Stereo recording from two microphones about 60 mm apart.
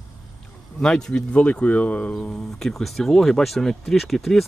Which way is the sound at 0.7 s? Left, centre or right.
Centre.